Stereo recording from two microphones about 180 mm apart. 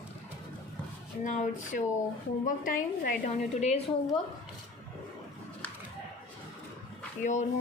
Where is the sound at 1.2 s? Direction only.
45° left (ahead or behind).